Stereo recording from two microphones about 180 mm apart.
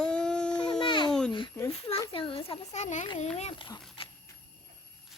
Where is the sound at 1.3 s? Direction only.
25° left (ahead or behind).